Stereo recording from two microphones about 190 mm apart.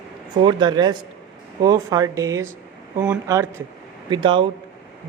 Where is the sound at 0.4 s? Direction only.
20° right (ahead or behind).